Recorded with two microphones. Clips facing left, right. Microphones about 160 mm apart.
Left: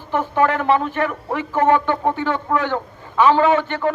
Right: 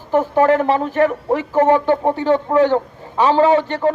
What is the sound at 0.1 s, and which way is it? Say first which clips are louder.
Speech: right 5 dB; 40° right (ahead or behind).